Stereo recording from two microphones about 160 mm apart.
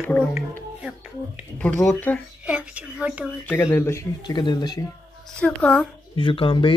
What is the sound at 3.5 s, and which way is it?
Speech, 15° left (ahead or behind).